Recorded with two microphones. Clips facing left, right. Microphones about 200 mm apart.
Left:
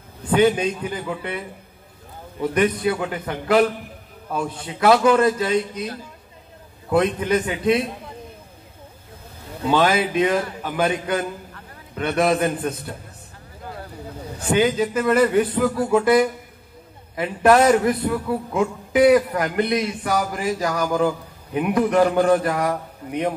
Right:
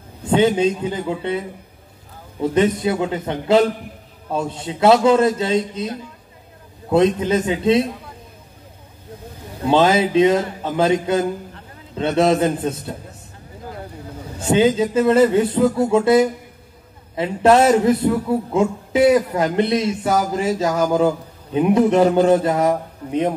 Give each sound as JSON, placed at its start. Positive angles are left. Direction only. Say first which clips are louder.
{"t": 0.3, "sound": "a man's voice", "louder": "right 2 dB", "side_deg": -25}
{"t": 2.5, "sound": "a man's voice", "louder": "right 2 dB", "side_deg": -25}
{"t": 9.6, "sound": "a man's voice", "louder": "right 3 dB", "side_deg": -25}
{"t": 14.4, "sound": "a man's voice", "louder": "right 3 dB", "side_deg": -25}